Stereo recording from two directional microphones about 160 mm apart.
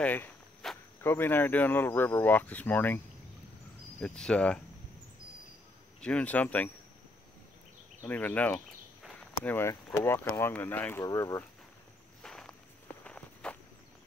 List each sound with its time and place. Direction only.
0.0 s walk: 10° left (ahead or behind)
1.0 s speech: 15° left (ahead or behind)
4.0 s speech: 5° left (ahead or behind)
5.9 s speech: 5° left (ahead or behind)
8.0 s speech: 10° left (ahead or behind)
9.0 s walk: 5° left (ahead or behind)
10.0 s speech: 15° left (ahead or behind)
12.2 s walk: centre (ahead or behind)